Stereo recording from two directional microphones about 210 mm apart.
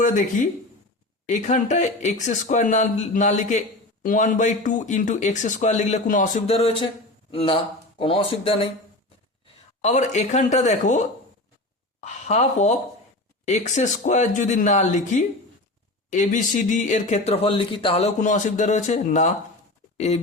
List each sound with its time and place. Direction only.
0.0 s speech: 35° left (ahead or behind)
9.8 s a woman's voice: 35° left (ahead or behind)